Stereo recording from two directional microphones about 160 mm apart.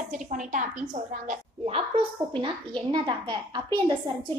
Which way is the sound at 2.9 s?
30° right (ahead or behind).